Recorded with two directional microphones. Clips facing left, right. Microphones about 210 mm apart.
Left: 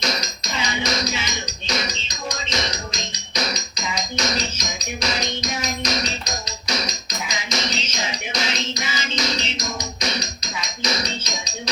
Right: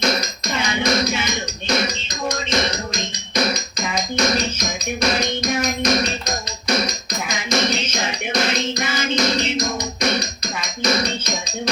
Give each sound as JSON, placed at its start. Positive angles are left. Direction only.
{"t": 0.0, "sound": "music", "side_deg": -55}